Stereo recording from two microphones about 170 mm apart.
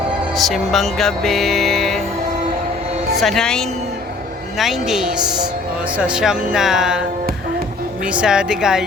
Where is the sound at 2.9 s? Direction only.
40° right (ahead or behind).